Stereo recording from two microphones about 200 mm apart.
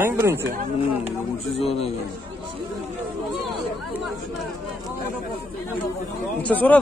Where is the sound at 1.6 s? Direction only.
30° left (ahead or behind).